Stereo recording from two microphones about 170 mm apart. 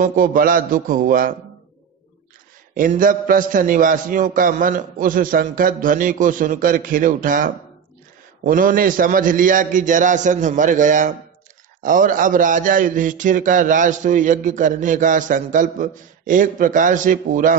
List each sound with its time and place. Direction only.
0.0 s a man's voice: 55° right (ahead or behind)
2.7 s a man's voice: 55° right (ahead or behind)